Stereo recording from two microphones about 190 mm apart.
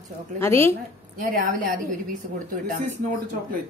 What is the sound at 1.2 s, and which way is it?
Speech, 50° right (ahead or behind).